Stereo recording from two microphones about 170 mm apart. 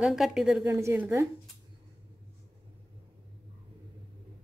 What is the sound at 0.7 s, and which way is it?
Speech, 15° right (ahead or behind).